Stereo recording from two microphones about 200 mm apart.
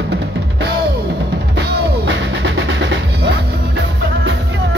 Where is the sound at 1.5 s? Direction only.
60° right (ahead or behind).